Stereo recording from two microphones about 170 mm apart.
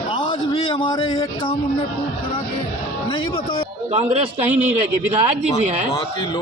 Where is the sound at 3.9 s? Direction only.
40° right (ahead or behind).